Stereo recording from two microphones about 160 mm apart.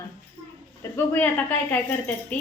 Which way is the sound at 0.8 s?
15° left (ahead or behind).